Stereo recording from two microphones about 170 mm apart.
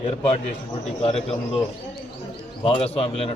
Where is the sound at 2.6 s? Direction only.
35° left (ahead or behind).